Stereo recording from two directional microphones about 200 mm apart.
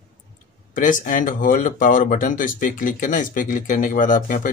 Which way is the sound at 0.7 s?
40° left (ahead or behind).